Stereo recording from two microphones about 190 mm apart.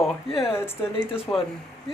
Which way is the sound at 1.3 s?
20° left (ahead or behind).